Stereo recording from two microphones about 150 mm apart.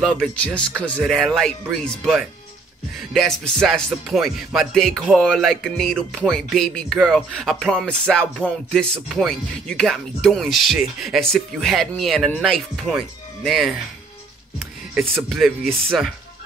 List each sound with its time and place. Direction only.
0.0 s music: 5° left (ahead or behind)
15.0 s music: centre (ahead or behind)